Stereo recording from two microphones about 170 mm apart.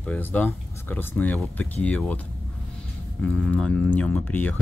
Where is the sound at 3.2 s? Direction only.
5° left (ahead or behind).